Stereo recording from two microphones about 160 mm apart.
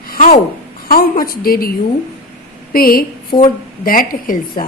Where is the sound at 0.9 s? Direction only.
65° left (ahead or behind).